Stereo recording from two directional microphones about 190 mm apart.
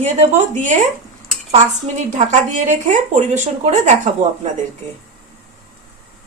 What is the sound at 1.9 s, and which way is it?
A woman's voice, 40° right (ahead or behind).